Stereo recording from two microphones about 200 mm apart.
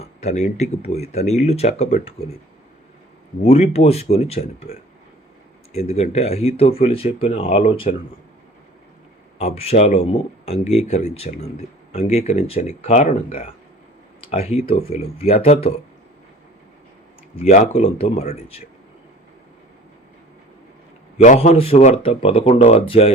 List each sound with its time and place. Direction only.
0.0 s speech: 35° left (ahead or behind)
3.4 s speech: 30° left (ahead or behind)
5.7 s speech: 30° left (ahead or behind)
9.4 s speech: 30° left (ahead or behind)
17.4 s speech: 35° left (ahead or behind)
21.2 s speech: 35° left (ahead or behind)